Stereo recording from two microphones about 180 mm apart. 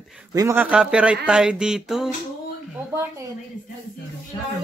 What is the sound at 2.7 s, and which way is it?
Speech, 15° right (ahead or behind).